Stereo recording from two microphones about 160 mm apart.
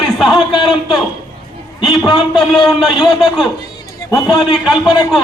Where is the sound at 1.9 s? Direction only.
Centre (ahead or behind).